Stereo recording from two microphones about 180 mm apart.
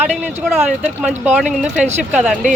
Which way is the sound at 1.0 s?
5° right (ahead or behind).